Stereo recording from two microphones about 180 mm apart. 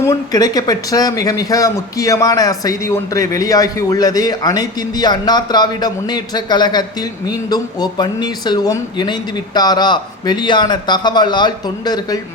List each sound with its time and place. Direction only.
0.0 s speech: 20° left (ahead or behind)